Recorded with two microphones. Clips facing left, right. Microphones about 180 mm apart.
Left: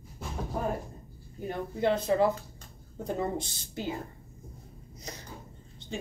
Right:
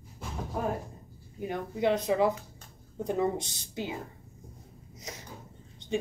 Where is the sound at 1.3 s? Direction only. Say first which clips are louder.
Even; 15° right (ahead or behind).